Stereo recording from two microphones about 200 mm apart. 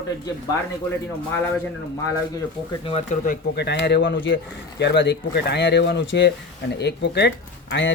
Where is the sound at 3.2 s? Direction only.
50° left (ahead or behind).